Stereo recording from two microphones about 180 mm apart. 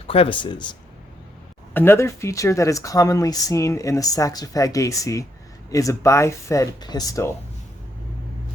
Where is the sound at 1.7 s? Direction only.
15° left (ahead or behind).